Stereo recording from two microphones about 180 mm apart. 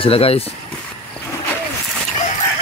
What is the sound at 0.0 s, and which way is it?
Speech, 30° left (ahead or behind).